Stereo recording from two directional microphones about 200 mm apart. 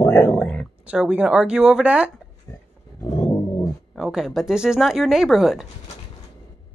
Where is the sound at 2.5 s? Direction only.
15° left (ahead or behind).